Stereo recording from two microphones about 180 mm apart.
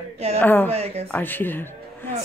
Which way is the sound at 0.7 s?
35° right (ahead or behind).